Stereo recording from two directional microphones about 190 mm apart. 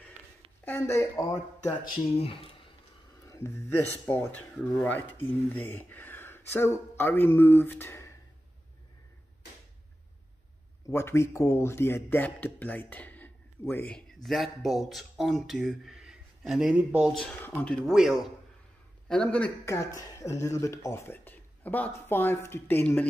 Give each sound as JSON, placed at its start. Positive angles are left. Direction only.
{"t": 0.7, "sound": "speech", "side_deg": 15}
{"t": 2.1, "sound": "speech", "side_deg": 30}
{"t": 3.3, "sound": "speech", "side_deg": 15}
{"t": 10.9, "sound": "speech", "side_deg": 15}